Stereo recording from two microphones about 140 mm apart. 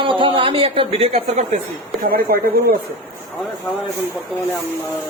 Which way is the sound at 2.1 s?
90° right.